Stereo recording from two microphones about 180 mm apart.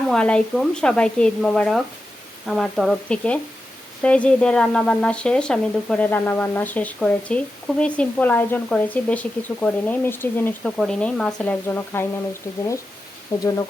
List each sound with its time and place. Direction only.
0.1 s speech: 5° left (ahead or behind)
13.3 s speech: 20° left (ahead or behind)